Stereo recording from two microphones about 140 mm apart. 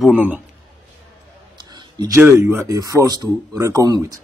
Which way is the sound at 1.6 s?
30° right (ahead or behind).